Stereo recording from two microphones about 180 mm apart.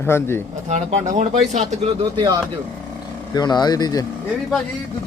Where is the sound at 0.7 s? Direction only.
40° right (ahead or behind).